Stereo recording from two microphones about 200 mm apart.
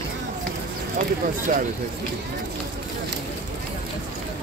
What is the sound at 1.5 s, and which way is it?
Speech, 40° right (ahead or behind).